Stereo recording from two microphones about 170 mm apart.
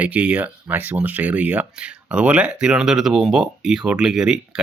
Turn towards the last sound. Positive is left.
turn(degrees=-5)  # may be behind; listen again after turning